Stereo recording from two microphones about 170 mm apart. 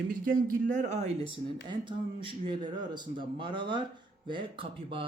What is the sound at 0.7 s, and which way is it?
Speech, 45° right (ahead or behind).